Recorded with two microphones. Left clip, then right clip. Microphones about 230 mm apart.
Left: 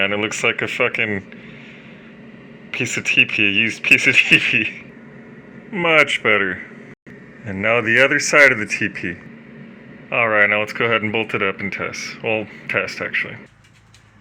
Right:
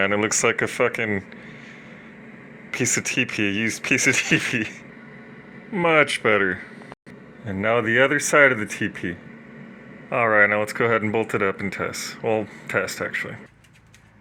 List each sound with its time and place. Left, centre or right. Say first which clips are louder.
0.0 s speech: left 2 dB; centre
2.7 s speech: left 7 dB; centre
5.7 s speech: left 3 dB; centre
7.5 s speech: left 4 dB; centre
10.1 s speech: left 2 dB; centre